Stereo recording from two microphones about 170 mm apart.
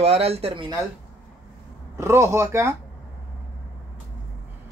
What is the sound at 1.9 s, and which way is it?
Speech, 15° right (ahead or behind).